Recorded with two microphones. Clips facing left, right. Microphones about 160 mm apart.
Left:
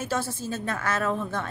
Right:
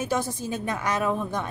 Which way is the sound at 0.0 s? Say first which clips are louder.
Right 2 dB; 15° right (ahead or behind).